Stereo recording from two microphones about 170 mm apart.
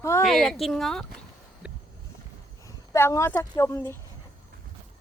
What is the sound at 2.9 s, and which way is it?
Speech, 15° left (ahead or behind).